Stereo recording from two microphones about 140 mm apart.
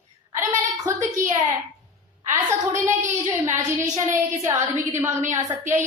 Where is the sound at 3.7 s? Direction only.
25° right (ahead or behind).